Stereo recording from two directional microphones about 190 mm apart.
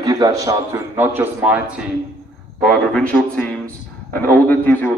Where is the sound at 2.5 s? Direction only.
5° left (ahead or behind).